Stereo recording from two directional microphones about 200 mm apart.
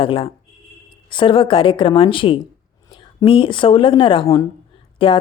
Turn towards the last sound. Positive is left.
turn(degrees=25)  # may be behind; listen again after turning